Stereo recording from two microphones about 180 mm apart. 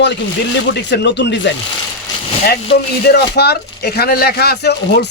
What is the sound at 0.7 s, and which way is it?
Speech, 70° left (ahead or behind).